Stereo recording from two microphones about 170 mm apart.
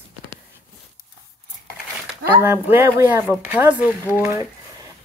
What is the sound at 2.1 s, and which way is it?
Speech, 15° right (ahead or behind).